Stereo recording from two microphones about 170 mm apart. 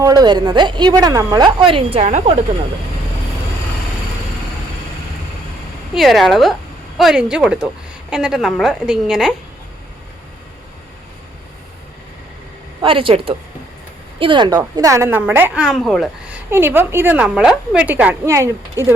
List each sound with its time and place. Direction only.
0.0 s a woman's voice: 25° right (ahead or behind); by 2.4 s 40° right (ahead or behind)
5.9 s a woman's voice: centre (ahead or behind)
12.8 s a woman's voice: 30° right (ahead or behind); by 15.6 s 10° right (ahead or behind)
15.6 s speech: centre (ahead or behind)
16.5 s a woman's voice: 15° right (ahead or behind)